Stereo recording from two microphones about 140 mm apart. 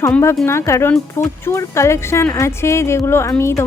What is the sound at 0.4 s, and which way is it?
A woman's voice, 20° left (ahead or behind).